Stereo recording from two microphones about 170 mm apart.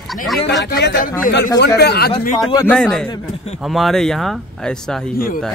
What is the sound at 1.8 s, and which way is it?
Speech, 70° left (ahead or behind).